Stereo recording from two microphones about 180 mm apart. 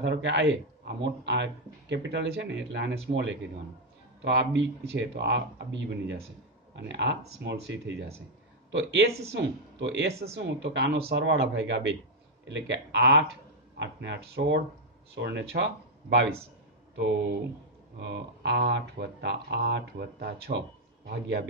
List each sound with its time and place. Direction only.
0.0 s speech: 75° right (ahead or behind)